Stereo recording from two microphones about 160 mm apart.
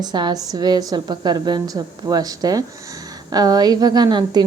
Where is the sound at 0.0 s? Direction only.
25° right (ahead or behind).